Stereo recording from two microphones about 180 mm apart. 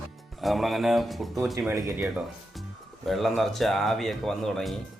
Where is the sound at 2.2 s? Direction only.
Centre (ahead or behind).